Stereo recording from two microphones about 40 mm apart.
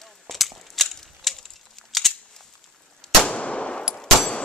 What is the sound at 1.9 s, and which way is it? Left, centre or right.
Scissors, centre.